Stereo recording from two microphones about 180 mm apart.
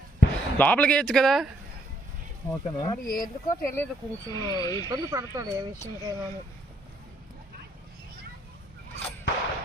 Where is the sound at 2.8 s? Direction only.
20° left (ahead or behind).